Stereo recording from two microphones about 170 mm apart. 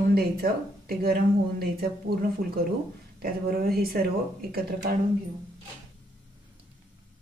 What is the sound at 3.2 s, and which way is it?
Speech, 60° right (ahead or behind).